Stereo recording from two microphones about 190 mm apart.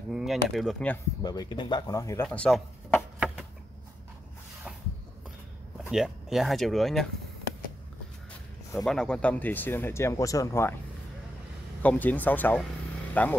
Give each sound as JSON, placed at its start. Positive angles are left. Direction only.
{"t": 0.1, "sound": "speech", "side_deg": 0}
{"t": 1.2, "sound": "speech", "side_deg": 20}
{"t": 2.2, "sound": "speech", "side_deg": 5}
{"t": 5.9, "sound": "speech", "side_deg": 0}
{"t": 8.7, "sound": "speech", "side_deg": 0}
{"t": 11.8, "sound": "speech", "side_deg": 10}